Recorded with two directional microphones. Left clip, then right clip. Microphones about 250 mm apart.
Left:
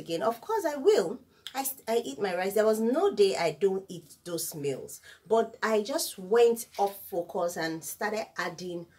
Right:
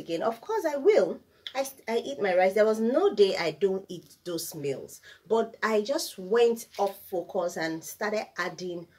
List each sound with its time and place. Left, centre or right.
0.1 s speech: left; by 8.6 s centre